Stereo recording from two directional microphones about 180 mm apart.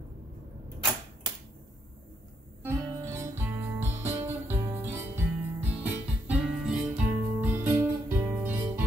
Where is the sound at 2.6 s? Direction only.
15° right (ahead or behind).